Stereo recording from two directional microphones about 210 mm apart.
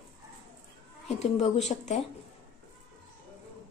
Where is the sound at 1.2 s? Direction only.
35° left (ahead or behind).